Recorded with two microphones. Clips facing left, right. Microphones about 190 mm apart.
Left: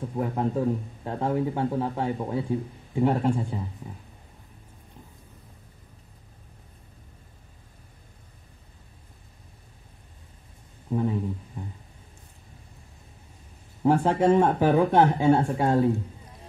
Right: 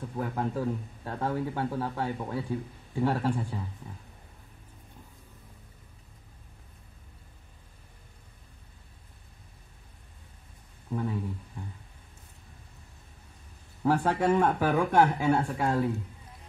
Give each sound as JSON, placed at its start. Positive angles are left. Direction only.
{"t": 0.1, "sound": "a man's voice", "side_deg": 25}
{"t": 10.9, "sound": "speech", "side_deg": 25}
{"t": 13.8, "sound": "a man's voice", "side_deg": 25}